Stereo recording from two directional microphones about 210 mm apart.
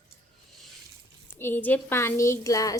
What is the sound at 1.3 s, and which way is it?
A woman's voice, 10° left (ahead or behind).